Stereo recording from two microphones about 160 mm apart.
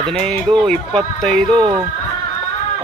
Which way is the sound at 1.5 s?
30° right (ahead or behind).